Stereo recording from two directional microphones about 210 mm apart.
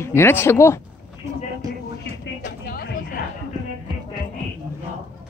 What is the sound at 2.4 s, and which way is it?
Vehicle, 45° left (ahead or behind).